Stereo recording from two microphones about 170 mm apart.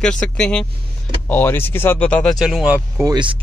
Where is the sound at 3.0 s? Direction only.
25° right (ahead or behind).